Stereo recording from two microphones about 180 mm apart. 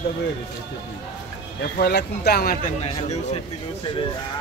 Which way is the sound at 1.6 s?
65° left (ahead or behind).